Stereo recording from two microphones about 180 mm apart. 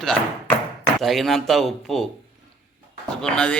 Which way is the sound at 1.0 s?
Centre (ahead or behind).